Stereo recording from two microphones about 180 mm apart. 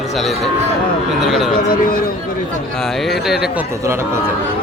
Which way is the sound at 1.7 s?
50° left (ahead or behind).